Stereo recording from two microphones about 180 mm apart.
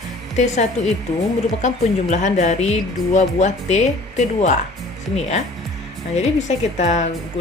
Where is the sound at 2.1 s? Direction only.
40° left (ahead or behind).